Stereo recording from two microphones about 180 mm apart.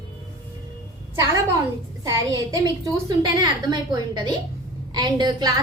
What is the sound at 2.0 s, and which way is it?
Speech, 20° right (ahead or behind).